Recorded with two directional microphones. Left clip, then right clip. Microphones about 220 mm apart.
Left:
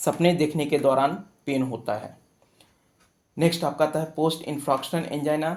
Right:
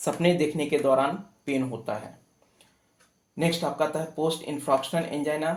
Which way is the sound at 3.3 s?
45° left (ahead or behind).